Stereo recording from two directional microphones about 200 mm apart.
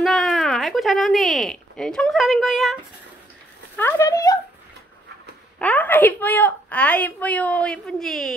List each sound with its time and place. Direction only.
0.0 s speech: centre (ahead or behind)
3.7 s a woman's voice: 15° left (ahead or behind)
5.6 s a woman's voice: 10° left (ahead or behind)